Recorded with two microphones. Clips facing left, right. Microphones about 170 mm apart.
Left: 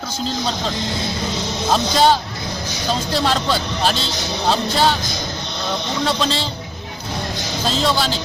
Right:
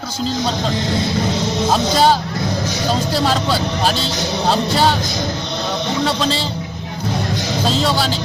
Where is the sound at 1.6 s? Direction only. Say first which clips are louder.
Even; 5° right (ahead or behind).